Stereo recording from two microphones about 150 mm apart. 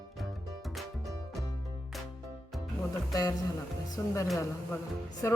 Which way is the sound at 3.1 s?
25° left (ahead or behind).